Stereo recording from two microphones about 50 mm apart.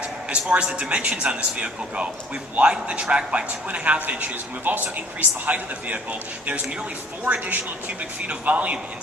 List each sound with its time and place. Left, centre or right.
0.3 s a man's voice: right